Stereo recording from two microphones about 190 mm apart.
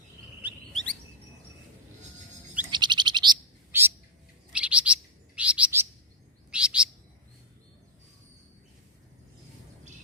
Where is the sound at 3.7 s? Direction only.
10° right (ahead or behind).